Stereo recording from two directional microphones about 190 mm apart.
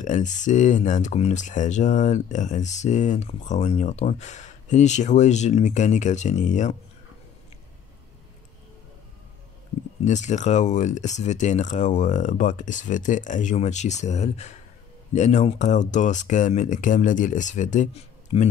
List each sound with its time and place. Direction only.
0.0 s speech: 40° left (ahead or behind)
10.0 s speech: 40° left (ahead or behind)
18.3 s speech: 30° left (ahead or behind)